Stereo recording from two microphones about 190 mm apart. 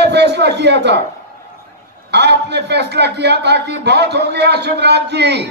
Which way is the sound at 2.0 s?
60° right (ahead or behind).